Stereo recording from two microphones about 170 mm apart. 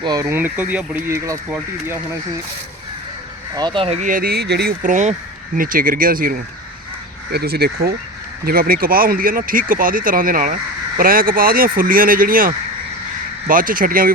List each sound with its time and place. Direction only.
0.0 s speech: 20° right (ahead or behind)
3.5 s speech: 25° right (ahead or behind)
4.1 s speech: 65° right (ahead or behind)
4.8 s speech: 50° right (ahead or behind)